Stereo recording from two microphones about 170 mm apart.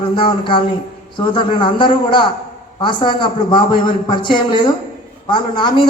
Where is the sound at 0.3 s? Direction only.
30° left (ahead or behind).